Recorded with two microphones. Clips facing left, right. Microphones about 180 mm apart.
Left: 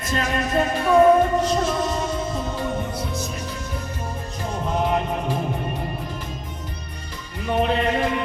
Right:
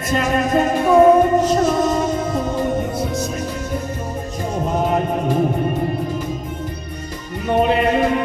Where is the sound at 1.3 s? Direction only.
45° right (ahead or behind).